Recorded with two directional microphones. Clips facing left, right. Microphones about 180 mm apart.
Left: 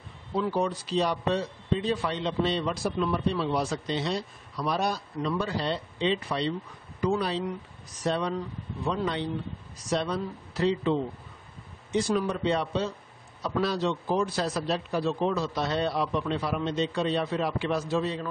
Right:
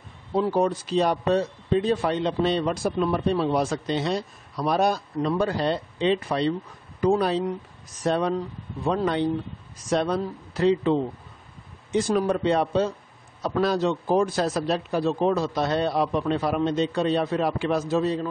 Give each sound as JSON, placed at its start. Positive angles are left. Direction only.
{"t": 0.4, "sound": "a man's voice", "side_deg": -45}